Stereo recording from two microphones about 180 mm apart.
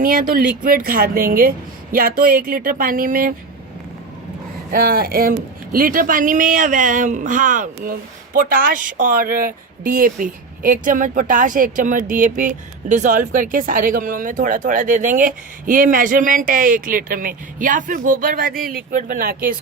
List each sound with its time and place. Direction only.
0.0 s speech: 50° right (ahead or behind)
4.7 s speech: 55° right (ahead or behind)